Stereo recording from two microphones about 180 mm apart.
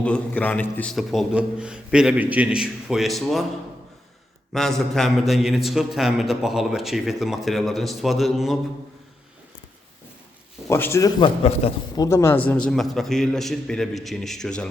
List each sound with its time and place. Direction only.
0.0 s a man's voice: 5° left (ahead or behind)
4.5 s a man's voice: centre (ahead or behind)
10.7 s speech: 15° left (ahead or behind)
11.2 s a man's voice: 35° left (ahead or behind)
11.9 s a man's voice: 15° left (ahead or behind)